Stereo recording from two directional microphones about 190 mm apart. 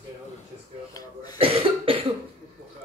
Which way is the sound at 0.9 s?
20° left (ahead or behind).